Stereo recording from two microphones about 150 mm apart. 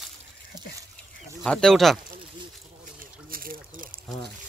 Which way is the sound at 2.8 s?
70° right (ahead or behind).